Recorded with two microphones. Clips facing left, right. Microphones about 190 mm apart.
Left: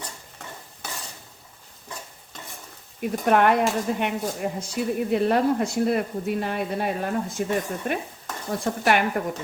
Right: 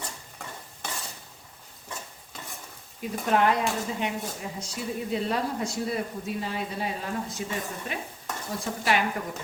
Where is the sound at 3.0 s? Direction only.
60° left (ahead or behind).